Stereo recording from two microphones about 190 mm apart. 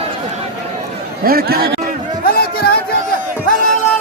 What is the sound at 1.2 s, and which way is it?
Speech, 50° right (ahead or behind).